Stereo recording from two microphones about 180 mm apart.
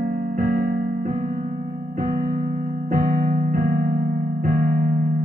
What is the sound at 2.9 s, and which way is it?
Keyboard, 45° right (ahead or behind).